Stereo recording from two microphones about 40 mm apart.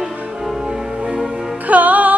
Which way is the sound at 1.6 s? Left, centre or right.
Right.